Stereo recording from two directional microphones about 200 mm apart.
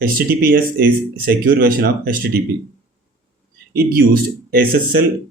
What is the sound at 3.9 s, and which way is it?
Speech, 50° right (ahead or behind).